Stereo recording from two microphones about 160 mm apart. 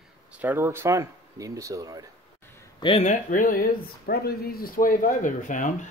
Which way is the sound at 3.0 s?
50° left (ahead or behind).